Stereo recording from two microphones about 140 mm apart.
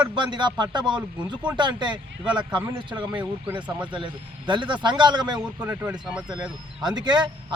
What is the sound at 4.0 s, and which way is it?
Speech, 35° right (ahead or behind).